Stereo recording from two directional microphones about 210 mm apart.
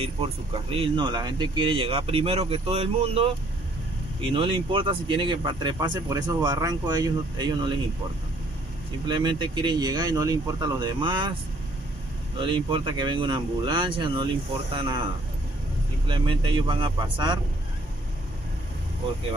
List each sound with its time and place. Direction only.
0.0 s speech: 25° right (ahead or behind)
4.3 s speech: 25° right (ahead or behind)
9.0 s speech: 20° right (ahead or behind)
12.4 s speech: 25° right (ahead or behind)
16.1 s speech: 25° right (ahead or behind)